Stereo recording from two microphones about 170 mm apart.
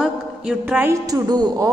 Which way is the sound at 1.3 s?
25° right (ahead or behind).